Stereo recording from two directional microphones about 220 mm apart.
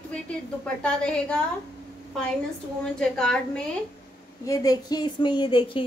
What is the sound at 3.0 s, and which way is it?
Speech, 5° left (ahead or behind).